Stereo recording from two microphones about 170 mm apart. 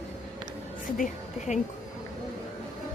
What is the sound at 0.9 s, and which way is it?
Speech, 45° left (ahead or behind).